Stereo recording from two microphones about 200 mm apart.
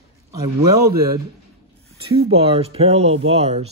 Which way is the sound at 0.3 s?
15° right (ahead or behind).